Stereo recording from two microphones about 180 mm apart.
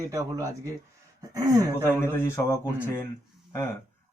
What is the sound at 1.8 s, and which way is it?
Speech, 10° left (ahead or behind).